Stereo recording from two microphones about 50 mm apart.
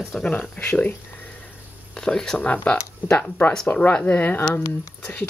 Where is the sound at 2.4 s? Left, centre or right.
Left.